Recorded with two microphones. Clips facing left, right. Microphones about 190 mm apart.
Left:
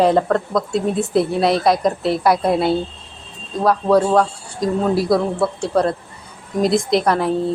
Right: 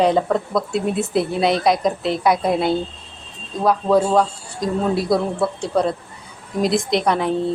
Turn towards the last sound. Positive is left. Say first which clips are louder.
# left 2 dB
turn(degrees=0)  # may be behind; listen again after turning